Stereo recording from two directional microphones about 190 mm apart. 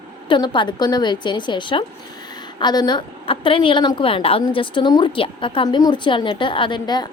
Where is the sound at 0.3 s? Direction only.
25° left (ahead or behind).